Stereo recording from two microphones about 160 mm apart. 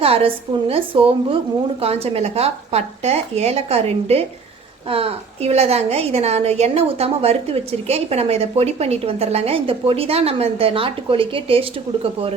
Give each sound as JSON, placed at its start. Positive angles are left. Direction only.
{"t": 0.0, "sound": "a woman's voice", "side_deg": -35}